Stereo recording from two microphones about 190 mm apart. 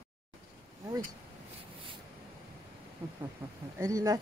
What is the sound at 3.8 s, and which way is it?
Speech, 15° right (ahead or behind).